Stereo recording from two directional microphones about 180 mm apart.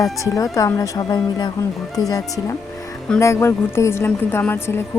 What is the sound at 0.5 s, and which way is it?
Music, 20° left (ahead or behind).